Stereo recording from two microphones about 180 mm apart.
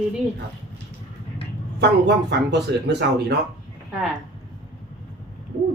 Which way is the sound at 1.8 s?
70° right (ahead or behind).